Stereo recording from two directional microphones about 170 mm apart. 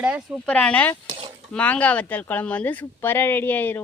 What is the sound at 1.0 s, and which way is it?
Cutlery, 35° right (ahead or behind).